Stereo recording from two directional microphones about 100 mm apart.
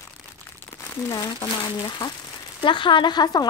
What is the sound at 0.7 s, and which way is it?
A woman's voice, 35° left (ahead or behind).